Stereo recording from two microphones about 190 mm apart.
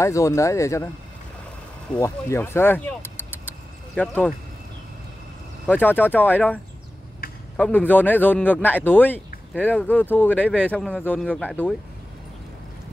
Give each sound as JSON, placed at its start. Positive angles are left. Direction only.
{"t": 0.0, "sound": "speech", "side_deg": 15}
{"t": 2.0, "sound": "speech", "side_deg": 15}
{"t": 5.7, "sound": "speech", "side_deg": 10}